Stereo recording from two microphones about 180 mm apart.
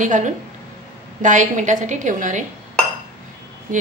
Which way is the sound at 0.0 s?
45° right (ahead or behind).